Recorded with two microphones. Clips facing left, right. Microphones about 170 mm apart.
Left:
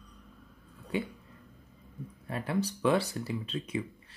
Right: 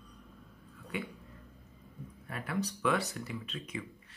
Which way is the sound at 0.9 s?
30° left (ahead or behind).